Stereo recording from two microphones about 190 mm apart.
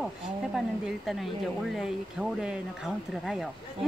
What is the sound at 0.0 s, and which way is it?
Speech, centre (ahead or behind).